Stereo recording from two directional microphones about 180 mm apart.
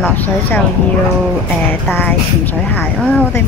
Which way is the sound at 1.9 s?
10° left (ahead or behind).